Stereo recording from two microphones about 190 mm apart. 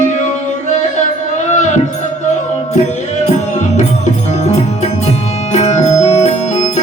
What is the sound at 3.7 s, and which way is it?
Music, 35° left (ahead or behind).